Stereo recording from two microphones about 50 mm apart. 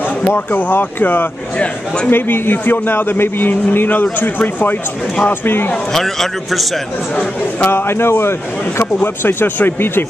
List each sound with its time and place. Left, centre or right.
0.5 s a man's voice: left
5.9 s a man's voice: centre
7.6 s a man's voice: left